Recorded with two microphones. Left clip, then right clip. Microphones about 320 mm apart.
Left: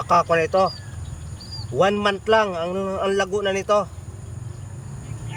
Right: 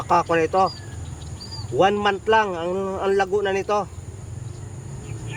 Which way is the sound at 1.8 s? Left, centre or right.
Centre.